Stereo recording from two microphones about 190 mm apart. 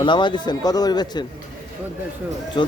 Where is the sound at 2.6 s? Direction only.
25° left (ahead or behind).